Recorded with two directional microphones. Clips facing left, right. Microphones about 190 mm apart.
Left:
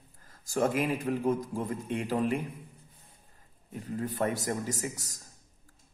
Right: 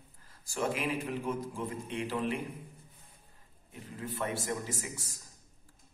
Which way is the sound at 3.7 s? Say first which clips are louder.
Left 7 dB; 45° left (ahead or behind).